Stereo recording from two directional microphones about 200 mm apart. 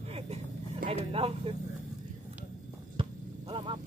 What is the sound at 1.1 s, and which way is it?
Speech, 30° right (ahead or behind).